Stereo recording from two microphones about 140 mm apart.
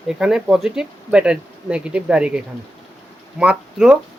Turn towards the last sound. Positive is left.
turn(degrees=-5)  # may be behind; listen again after turning